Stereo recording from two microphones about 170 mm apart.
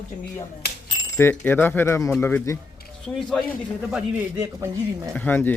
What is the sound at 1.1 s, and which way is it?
Speech, 15° left (ahead or behind).